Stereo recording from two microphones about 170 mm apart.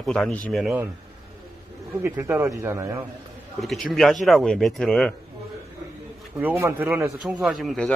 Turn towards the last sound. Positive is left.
turn(degrees=5)  # may be behind; listen again after turning